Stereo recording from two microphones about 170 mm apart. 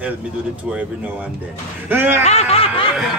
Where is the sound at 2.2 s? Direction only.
40° left (ahead or behind).